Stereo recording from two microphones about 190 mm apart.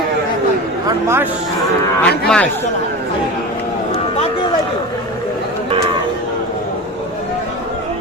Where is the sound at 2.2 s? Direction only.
5° left (ahead or behind).